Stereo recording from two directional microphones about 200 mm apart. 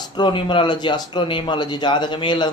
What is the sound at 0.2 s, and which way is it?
Speech, 25° left (ahead or behind).